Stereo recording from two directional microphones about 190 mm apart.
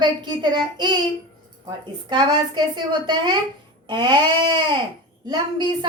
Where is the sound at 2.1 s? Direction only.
25° right (ahead or behind).